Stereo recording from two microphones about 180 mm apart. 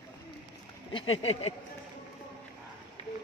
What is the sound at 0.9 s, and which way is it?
Speech, 35° left (ahead or behind).